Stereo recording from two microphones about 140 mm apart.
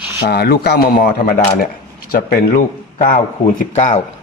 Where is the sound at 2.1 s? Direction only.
90° left.